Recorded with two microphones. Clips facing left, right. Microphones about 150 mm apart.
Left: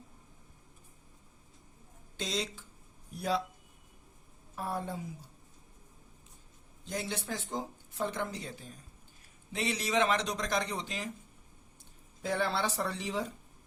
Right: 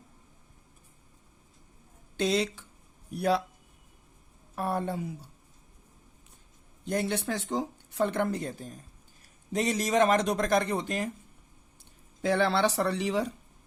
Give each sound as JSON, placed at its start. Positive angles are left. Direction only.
{"t": 2.1, "sound": "speech", "side_deg": -60}
{"t": 4.5, "sound": "speech", "side_deg": -65}
{"t": 6.8, "sound": "speech", "side_deg": -55}
{"t": 12.2, "sound": "speech", "side_deg": -75}